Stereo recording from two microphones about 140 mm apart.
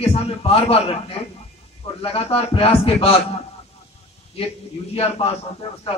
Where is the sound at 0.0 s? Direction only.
45° left (ahead or behind).